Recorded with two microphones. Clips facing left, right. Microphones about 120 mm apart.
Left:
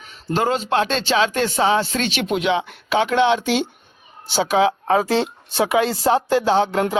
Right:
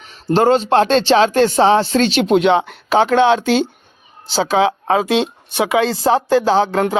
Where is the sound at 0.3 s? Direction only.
30° right (ahead or behind).